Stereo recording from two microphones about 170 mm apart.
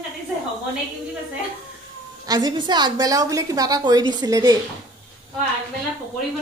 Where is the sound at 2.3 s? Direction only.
25° right (ahead or behind).